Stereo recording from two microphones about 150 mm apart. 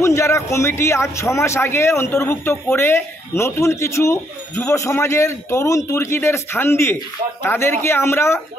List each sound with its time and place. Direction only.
0.0 s speech: 20° left (ahead or behind)